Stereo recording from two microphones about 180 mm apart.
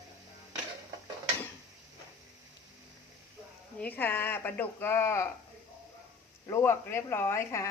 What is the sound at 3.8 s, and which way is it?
Speech, 10° left (ahead or behind).